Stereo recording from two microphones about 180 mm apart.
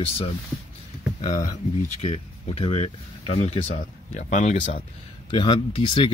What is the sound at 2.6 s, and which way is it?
Speech, 35° left (ahead or behind).